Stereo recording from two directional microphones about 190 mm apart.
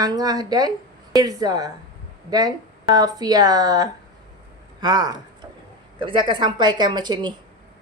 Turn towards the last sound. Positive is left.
turn(degrees=-20)  # may be behind; listen again after turning